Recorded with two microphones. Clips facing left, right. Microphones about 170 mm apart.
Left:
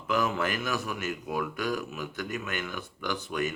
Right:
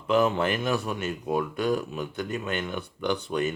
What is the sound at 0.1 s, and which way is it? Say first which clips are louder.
Speech: right 5 dB; 30° right (ahead or behind).